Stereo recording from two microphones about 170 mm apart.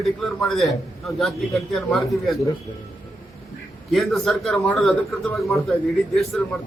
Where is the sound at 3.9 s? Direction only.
Centre (ahead or behind).